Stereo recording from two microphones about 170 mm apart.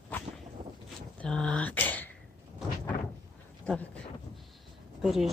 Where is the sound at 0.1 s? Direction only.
10° left (ahead or behind).